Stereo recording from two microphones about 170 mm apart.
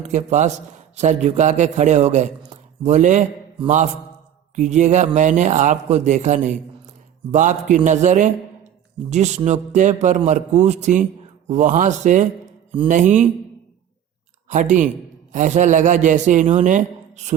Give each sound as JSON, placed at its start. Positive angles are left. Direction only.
{"t": 0.0, "sound": "a man's voice", "side_deg": -45}
{"t": 4.5, "sound": "a man's voice", "side_deg": -45}
{"t": 14.5, "sound": "a man's voice", "side_deg": -45}